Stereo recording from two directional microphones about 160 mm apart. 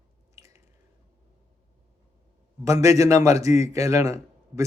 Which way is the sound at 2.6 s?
20° right (ahead or behind).